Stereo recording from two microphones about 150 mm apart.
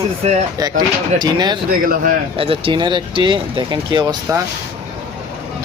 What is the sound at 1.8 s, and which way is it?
Speech, 70° right (ahead or behind).